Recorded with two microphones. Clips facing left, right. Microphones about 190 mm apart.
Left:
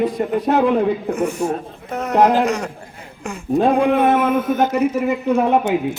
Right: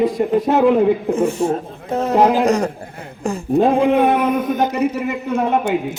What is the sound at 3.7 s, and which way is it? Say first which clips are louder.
A man's voice: right 1 dB; 20° right (ahead or behind).